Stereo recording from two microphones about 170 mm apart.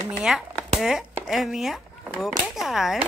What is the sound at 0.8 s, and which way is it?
Speech, centre (ahead or behind).